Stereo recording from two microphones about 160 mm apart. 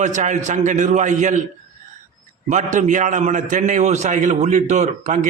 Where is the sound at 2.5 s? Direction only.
50° right (ahead or behind).